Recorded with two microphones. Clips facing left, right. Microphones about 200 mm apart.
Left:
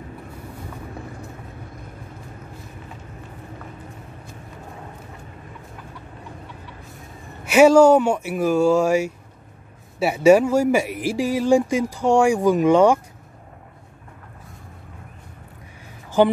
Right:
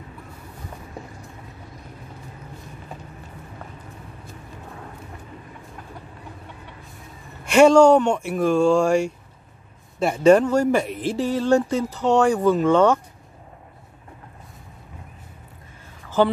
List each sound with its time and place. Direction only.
7.4 s speech: 5° left (ahead or behind)
16.2 s speech: 15° left (ahead or behind)